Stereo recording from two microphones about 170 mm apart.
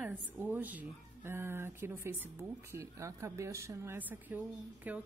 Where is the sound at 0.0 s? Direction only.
10° right (ahead or behind).